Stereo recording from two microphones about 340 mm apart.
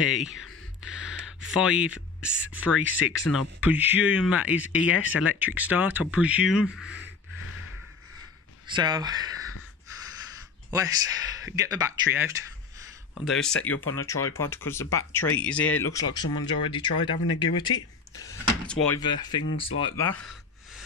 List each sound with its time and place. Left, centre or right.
0.2 s speech: centre
8.6 s speech: centre
10.7 s speech: centre
13.3 s speech: centre
13.7 s speech: left
14.4 s speech: centre
15.6 s speech: left
15.9 s speech: centre